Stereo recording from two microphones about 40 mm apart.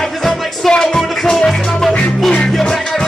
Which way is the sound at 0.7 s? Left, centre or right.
Centre.